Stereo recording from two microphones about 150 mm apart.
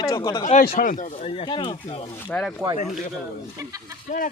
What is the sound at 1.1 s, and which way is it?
Speech, 40° left (ahead or behind).